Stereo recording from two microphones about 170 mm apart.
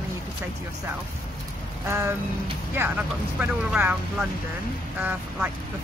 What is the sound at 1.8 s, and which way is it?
Speech, 15° right (ahead or behind).